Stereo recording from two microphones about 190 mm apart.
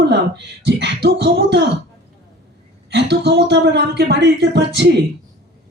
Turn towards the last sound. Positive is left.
turn(degrees=-65)  # may be behind; listen again after turning